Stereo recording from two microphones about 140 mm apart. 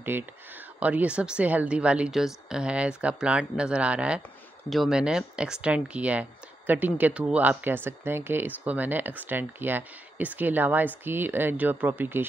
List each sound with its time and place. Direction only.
0.1 s speech: 15° right (ahead or behind)